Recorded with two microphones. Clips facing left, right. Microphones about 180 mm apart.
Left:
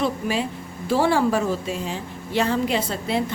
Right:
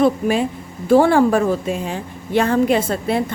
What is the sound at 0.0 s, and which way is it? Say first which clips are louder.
A woman's voice: right 7 dB; 50° right (ahead or behind).